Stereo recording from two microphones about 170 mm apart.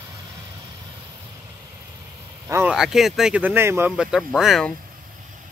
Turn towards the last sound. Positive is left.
turn(degrees=0)  # may be behind; listen again after turning